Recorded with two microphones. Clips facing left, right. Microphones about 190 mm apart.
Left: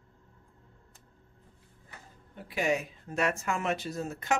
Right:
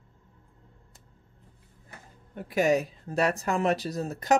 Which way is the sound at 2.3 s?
45° right (ahead or behind).